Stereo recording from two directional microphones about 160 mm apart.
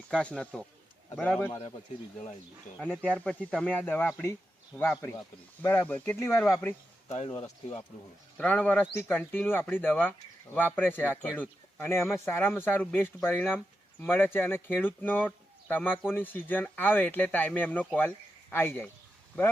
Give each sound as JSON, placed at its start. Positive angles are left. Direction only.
{"t": 0.1, "sound": "a man's voice", "side_deg": 5}
{"t": 3.0, "sound": "speech", "side_deg": 5}
{"t": 7.1, "sound": "speech", "side_deg": 40}
{"t": 8.4, "sound": "speech", "side_deg": 5}